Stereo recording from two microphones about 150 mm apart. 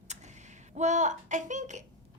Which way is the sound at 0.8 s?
55° right (ahead or behind).